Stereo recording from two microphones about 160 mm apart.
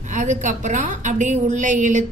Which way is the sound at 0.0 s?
50° right (ahead or behind).